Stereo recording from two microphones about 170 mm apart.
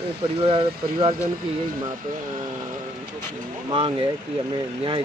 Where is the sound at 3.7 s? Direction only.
30° right (ahead or behind).